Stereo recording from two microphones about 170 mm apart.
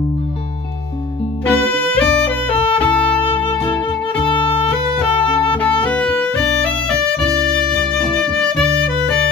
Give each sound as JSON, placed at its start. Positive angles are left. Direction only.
{"t": 1.4, "sound": "music", "side_deg": 10}
{"t": 2.9, "sound": "music", "side_deg": 30}
{"t": 5.6, "sound": "music", "side_deg": 10}
{"t": 8.2, "sound": "music", "side_deg": 5}